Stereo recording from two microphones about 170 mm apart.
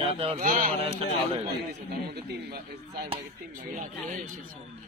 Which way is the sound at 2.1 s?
70° right (ahead or behind).